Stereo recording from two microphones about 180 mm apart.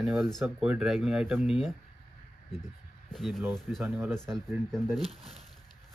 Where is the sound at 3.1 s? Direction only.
Centre (ahead or behind).